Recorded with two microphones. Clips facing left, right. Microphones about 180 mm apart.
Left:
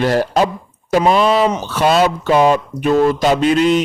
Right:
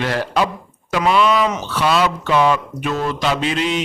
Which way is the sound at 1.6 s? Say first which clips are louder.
Left 4 dB; 45° left (ahead or behind).